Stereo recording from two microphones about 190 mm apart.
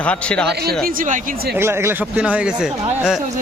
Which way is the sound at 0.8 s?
45° right (ahead or behind).